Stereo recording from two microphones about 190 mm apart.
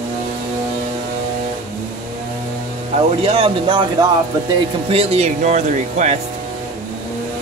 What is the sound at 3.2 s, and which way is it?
Speech, 30° right (ahead or behind).